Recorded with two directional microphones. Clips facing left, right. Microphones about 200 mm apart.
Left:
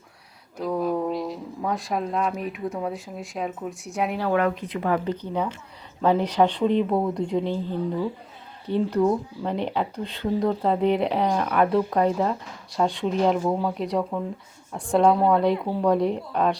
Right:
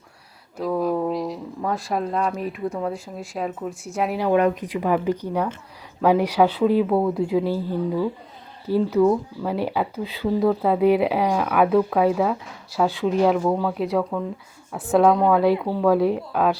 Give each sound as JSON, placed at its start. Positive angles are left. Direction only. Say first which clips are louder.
{"t": 0.5, "sound": "speech", "louder": "right 2 dB", "side_deg": 0}
{"t": 4.2, "sound": "speech", "louder": "right 5 dB", "side_deg": -20}